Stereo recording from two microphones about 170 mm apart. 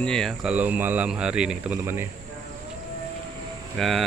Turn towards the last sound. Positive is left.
turn(degrees=0)  # may be behind; listen again after turning